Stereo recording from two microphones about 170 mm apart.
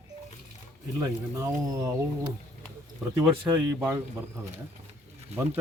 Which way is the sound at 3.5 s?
10° right (ahead or behind).